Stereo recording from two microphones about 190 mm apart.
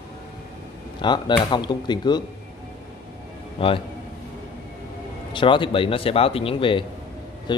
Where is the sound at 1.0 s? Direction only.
25° left (ahead or behind).